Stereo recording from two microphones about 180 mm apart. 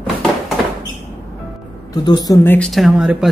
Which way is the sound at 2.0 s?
25° left (ahead or behind).